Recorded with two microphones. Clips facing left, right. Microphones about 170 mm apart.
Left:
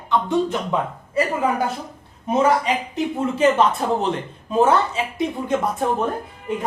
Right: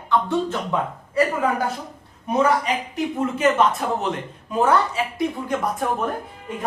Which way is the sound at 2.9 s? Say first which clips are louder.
Left 1 dB; 30° left (ahead or behind).